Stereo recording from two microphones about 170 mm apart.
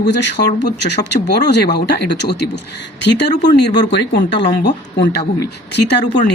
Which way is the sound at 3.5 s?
75° left (ahead or behind).